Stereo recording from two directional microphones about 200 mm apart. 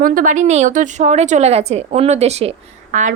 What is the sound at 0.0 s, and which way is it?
A woman's voice, 45° right (ahead or behind).